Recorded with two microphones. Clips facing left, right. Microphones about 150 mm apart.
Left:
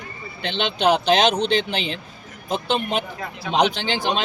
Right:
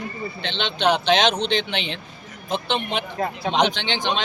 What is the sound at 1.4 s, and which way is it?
Speech, 40° left (ahead or behind).